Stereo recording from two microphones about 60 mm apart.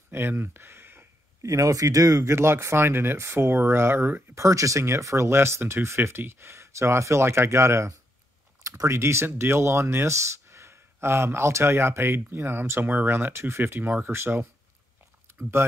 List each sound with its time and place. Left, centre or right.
0.1 s speech: right
1.4 s speech: right
2.2 s speech: right
4.4 s speech: right
15.2 s a sound: right